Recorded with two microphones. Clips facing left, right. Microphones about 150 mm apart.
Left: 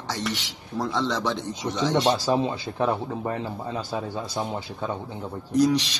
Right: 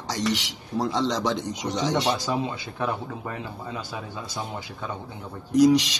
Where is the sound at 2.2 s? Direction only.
25° left (ahead or behind).